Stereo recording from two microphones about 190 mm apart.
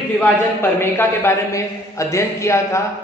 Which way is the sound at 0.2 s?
10° left (ahead or behind).